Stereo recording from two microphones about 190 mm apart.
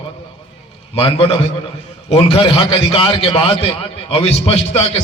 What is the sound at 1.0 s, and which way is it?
A man's voice, 30° left (ahead or behind).